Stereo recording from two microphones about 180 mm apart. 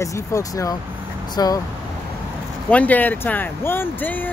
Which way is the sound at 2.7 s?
10° left (ahead or behind).